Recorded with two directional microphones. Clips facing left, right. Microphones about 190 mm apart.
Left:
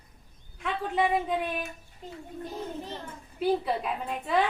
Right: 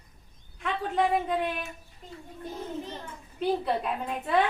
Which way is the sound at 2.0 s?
35° left (ahead or behind).